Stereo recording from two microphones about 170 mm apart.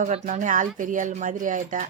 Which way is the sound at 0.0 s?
45° right (ahead or behind).